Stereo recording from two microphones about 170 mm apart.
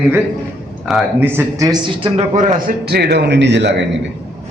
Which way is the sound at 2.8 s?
70° right (ahead or behind).